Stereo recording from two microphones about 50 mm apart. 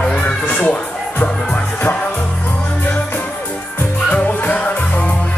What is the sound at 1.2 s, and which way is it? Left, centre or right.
Music, left.